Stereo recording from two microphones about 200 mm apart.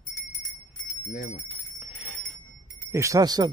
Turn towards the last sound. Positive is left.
turn(degrees=-20)  # may be behind; listen again after turning